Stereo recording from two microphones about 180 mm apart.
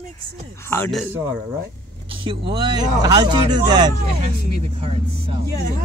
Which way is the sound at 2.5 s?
25° right (ahead or behind).